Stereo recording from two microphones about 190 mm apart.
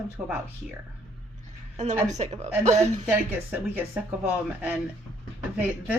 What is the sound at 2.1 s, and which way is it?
Speech, 35° right (ahead or behind).